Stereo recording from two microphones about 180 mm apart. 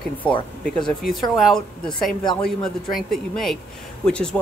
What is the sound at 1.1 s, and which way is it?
Speech, centre (ahead or behind).